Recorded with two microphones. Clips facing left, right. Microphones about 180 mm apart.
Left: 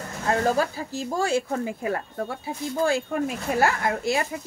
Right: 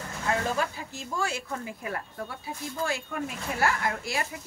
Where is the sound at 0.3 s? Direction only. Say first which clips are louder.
Left 6 dB; 35° left (ahead or behind).